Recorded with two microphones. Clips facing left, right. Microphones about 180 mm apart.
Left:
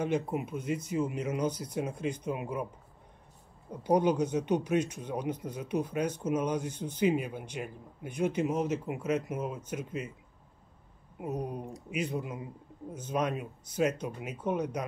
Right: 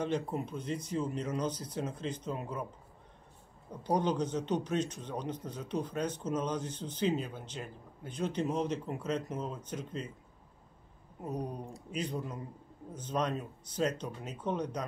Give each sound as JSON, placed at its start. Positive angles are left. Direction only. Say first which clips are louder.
{"t": 0.0, "sound": "speech", "louder": "left 3 dB", "side_deg": 10}
{"t": 3.8, "sound": "speech", "louder": "left 5 dB", "side_deg": 10}
{"t": 11.1, "sound": "speech", "louder": "left 3 dB", "side_deg": 10}